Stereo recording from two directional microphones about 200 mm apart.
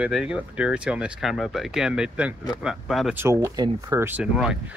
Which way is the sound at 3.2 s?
15° right (ahead or behind).